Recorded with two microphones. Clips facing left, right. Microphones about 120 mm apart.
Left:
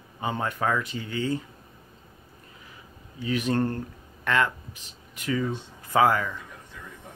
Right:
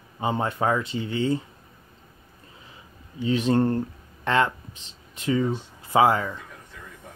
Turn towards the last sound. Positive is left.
turn(degrees=-25)  # may be behind; listen again after turning